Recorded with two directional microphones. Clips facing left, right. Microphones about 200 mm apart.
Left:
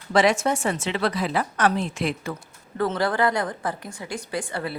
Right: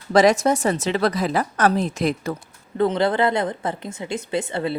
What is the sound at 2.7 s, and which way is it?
A woman's voice, 20° right (ahead or behind).